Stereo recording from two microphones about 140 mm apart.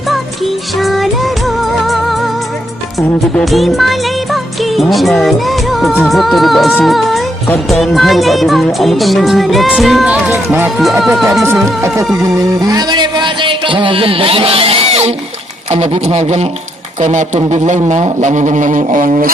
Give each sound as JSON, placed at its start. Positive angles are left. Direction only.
{"t": 0.1, "sound": "music", "side_deg": 0}
{"t": 3.3, "sound": "music", "side_deg": 0}
{"t": 10.3, "sound": "speech", "side_deg": -15}
{"t": 11.0, "sound": "music", "side_deg": 0}
{"t": 12.2, "sound": "a man's voice", "side_deg": -25}